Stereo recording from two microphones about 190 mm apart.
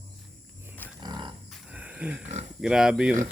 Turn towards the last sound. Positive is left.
turn(degrees=-5)  # may be behind; listen again after turning